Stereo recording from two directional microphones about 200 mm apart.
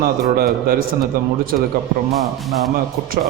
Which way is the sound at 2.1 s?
Centre (ahead or behind).